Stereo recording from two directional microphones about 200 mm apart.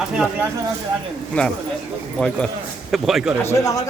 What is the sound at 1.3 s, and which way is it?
A man's voice, 5° left (ahead or behind).